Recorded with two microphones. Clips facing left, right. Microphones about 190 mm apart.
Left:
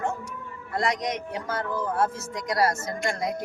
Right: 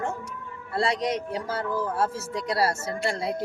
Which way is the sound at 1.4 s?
10° right (ahead or behind).